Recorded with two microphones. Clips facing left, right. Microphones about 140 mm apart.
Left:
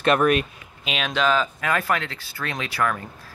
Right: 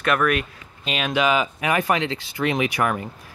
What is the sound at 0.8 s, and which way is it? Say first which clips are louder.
Speech: right 1 dB; centre (ahead or behind).